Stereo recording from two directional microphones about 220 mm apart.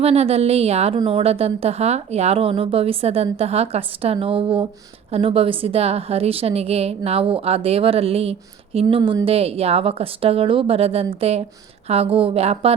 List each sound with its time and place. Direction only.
0.0 s a woman's voice: 30° right (ahead or behind)